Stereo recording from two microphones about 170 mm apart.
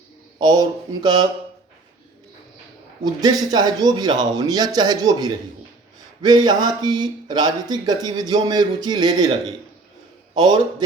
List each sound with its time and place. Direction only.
0.3 s speech: 25° right (ahead or behind)
3.0 s speech: 25° right (ahead or behind)
10.3 s speech: 25° right (ahead or behind)